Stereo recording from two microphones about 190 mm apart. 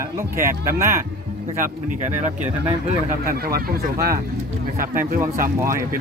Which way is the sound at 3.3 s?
55° right (ahead or behind).